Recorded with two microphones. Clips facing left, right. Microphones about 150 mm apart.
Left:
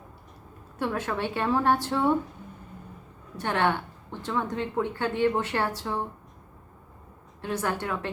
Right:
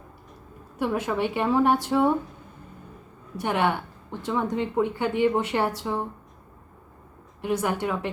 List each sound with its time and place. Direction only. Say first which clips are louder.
0.8 s speech: right 4 dB; 15° right (ahead or behind)
3.3 s speech: right 1 dB; 15° right (ahead or behind)
7.4 s speech: right 4 dB; 15° right (ahead or behind)